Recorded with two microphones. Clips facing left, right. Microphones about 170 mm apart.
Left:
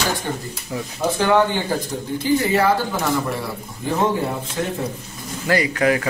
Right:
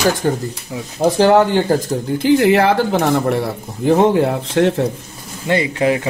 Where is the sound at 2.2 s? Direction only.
75° right (ahead or behind).